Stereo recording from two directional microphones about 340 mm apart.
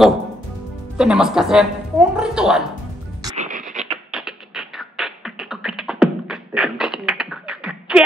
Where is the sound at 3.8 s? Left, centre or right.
Centre.